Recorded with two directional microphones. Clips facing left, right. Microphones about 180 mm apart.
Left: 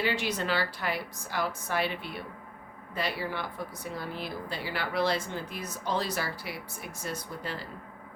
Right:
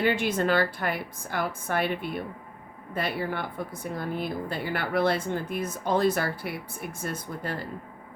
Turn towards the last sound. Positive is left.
turn(degrees=-55)  # may be behind; listen again after turning